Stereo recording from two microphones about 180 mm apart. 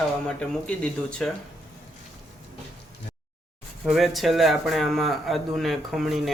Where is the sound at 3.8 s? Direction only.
Centre (ahead or behind).